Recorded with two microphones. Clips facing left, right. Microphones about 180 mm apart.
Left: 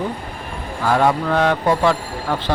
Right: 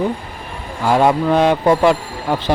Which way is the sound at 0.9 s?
15° right (ahead or behind).